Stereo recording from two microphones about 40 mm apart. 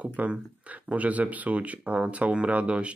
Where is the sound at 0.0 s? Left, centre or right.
Right.